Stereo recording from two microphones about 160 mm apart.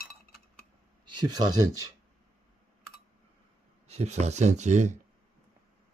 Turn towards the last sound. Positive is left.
turn(degrees=-45)  # may be behind; listen again after turning